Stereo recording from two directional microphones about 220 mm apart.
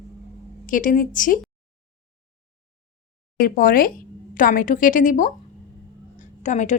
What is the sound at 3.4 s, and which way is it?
A woman's voice, 40° left (ahead or behind).